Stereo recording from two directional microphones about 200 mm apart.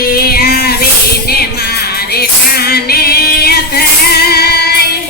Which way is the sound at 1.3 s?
50° left (ahead or behind).